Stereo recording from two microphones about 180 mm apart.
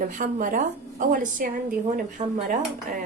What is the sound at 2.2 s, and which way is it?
Dishes, 40° right (ahead or behind).